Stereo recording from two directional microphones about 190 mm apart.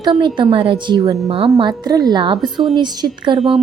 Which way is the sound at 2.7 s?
20° right (ahead or behind).